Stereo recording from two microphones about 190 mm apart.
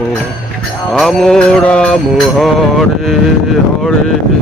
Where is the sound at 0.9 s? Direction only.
Centre (ahead or behind).